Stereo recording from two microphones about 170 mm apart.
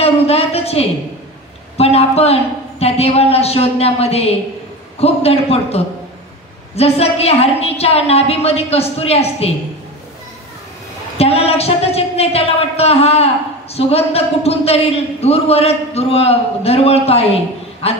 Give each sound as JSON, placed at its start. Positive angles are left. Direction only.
{"t": 0.0, "sound": "a sound", "side_deg": 35}
{"t": 1.8, "sound": "a man's voice", "side_deg": 35}
{"t": 11.1, "sound": "a man's voice", "side_deg": 35}